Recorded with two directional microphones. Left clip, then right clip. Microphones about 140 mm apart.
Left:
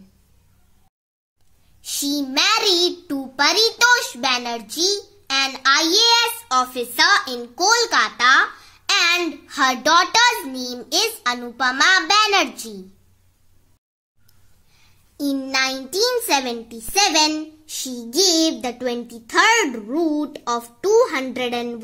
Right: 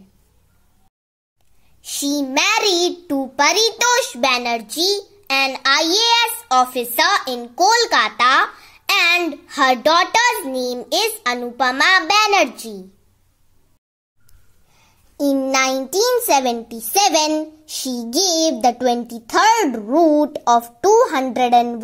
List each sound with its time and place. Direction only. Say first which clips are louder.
1.8 s a child's voice: right 2 dB; 10° right (ahead or behind)
15.1 s a child's voice: right 4 dB; 15° right (ahead or behind)
17.6 s child singing: right 4 dB; 25° right (ahead or behind)
18.1 s a child's voice: even; 30° right (ahead or behind)